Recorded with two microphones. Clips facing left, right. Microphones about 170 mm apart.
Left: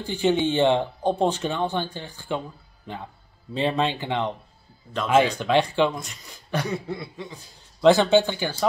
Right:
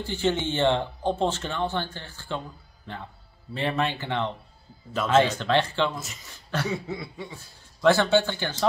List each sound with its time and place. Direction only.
0.0 s speech: 15° left (ahead or behind)
3.5 s speech: 15° left (ahead or behind)
6.7 s speech: centre (ahead or behind)
7.8 s speech: 15° left (ahead or behind)